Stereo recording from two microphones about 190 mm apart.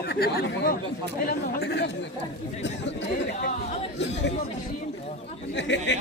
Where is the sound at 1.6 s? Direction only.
75° left (ahead or behind).